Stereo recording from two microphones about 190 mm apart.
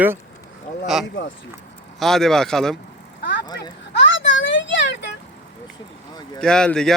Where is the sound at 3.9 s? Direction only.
70° left (ahead or behind).